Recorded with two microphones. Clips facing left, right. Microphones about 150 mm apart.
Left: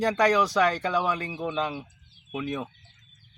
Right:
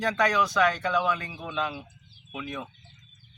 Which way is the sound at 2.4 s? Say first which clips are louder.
Left 5 dB; 40° left (ahead or behind).